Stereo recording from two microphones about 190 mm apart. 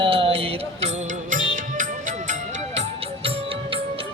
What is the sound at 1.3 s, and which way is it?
Music, 45° right (ahead or behind).